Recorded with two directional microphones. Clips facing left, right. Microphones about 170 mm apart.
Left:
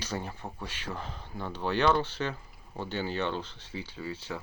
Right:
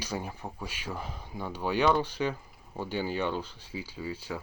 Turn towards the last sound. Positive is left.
turn(degrees=-10)  # may be behind; listen again after turning